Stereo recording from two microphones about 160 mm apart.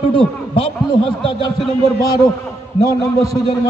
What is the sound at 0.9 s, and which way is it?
Speech, 30° left (ahead or behind).